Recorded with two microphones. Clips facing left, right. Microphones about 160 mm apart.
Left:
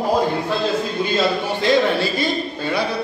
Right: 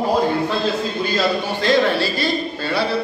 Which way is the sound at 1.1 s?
20° left (ahead or behind).